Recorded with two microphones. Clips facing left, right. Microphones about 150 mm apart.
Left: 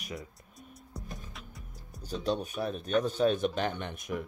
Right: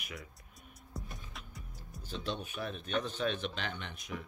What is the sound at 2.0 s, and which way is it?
Speech, 40° left (ahead or behind).